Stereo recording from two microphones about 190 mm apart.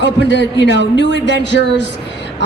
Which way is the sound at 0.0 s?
70° left (ahead or behind).